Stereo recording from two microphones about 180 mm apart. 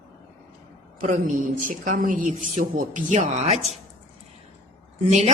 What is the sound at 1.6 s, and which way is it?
A woman's voice, 50° right (ahead or behind).